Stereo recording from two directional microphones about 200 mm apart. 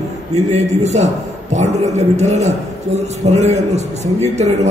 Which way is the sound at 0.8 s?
35° right (ahead or behind).